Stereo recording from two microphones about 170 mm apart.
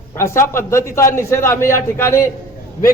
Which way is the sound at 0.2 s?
15° left (ahead or behind).